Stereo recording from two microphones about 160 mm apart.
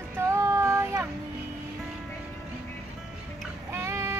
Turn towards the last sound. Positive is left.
turn(degrees=-15)  # may be behind; listen again after turning